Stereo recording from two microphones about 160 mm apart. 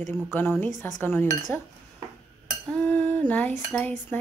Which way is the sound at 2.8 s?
10° left (ahead or behind).